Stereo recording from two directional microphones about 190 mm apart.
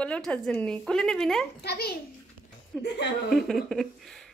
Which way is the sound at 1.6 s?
55° left (ahead or behind).